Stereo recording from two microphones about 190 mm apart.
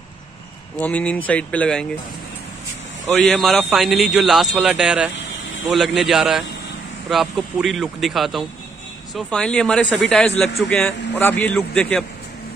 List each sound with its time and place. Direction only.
0.7 s a man's voice: 10° left (ahead or behind)
3.2 s a man's voice: centre (ahead or behind)